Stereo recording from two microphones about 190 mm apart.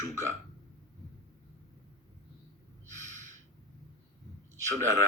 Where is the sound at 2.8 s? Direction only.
40° right (ahead or behind).